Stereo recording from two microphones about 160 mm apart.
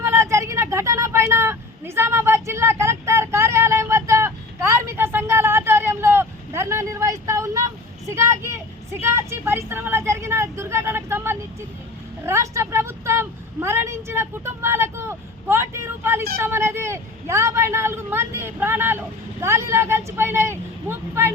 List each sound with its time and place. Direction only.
0.0 s a sound: 15° right (ahead or behind)
12.2 s vehicle: 15° right (ahead or behind)
16.4 s a woman's voice: 15° right (ahead or behind)